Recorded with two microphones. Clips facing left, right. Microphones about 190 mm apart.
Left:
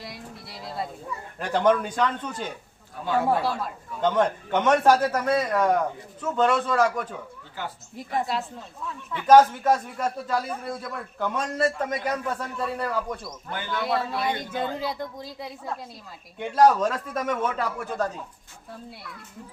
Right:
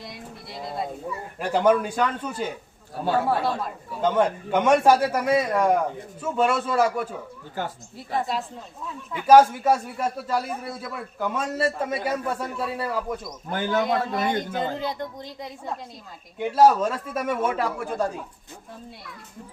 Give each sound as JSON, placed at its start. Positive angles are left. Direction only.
{"t": 0.0, "sound": "a sound", "side_deg": 0}
{"t": 1.4, "sound": "a man's voice", "side_deg": -5}
{"t": 2.9, "sound": "a man's voice", "side_deg": -35}
{"t": 4.0, "sound": "a man's voice", "side_deg": -5}
{"t": 7.6, "sound": "speech", "side_deg": -45}
{"t": 8.3, "sound": "speech", "side_deg": 0}
{"t": 9.1, "sound": "a man's voice", "side_deg": -10}
{"t": 13.5, "sound": "speech", "side_deg": -45}
{"t": 14.8, "sound": "a man's voice", "side_deg": 5}